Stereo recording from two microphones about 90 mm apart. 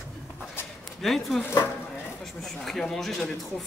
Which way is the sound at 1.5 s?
25° left (ahead or behind).